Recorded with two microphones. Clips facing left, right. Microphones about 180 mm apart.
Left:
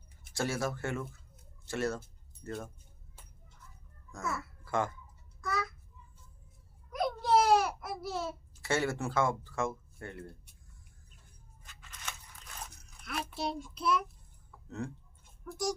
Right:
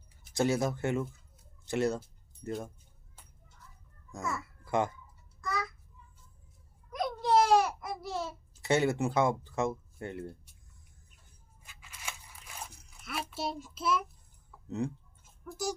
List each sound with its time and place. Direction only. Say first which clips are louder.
0.3 s speech: right 5 dB; 20° right (ahead or behind)
4.6 s speech: right 3 dB; 20° right (ahead or behind)
5.4 s a sound: even; 5° left (ahead or behind)
6.9 s babbling: right 1 dB; 5° left (ahead or behind)
8.6 s speech: right 4 dB; 20° right (ahead or behind)
11.6 s crunch: right 1 dB; 10° right (ahead or behind)
14.8 s speech: right 5 dB; 15° right (ahead or behind)
15.2 s a sound: left 1 dB; 5° right (ahead or behind)